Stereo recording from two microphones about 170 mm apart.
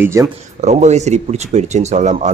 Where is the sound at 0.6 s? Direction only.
40° right (ahead or behind).